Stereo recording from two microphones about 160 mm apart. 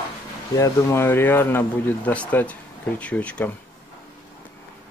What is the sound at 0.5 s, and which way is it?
Speech, 20° left (ahead or behind).